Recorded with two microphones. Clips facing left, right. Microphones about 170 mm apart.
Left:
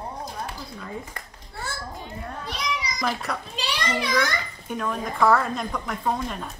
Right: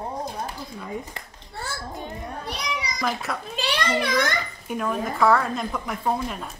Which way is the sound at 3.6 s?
55° right (ahead or behind).